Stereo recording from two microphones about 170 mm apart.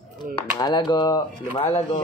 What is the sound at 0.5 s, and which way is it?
Speech, 25° left (ahead or behind).